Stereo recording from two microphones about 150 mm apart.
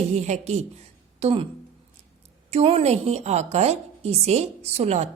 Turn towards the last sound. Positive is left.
turn(degrees=-45)  # may be behind; listen again after turning